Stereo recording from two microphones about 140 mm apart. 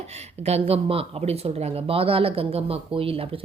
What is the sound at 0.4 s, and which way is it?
A woman's voice, 45° right (ahead or behind).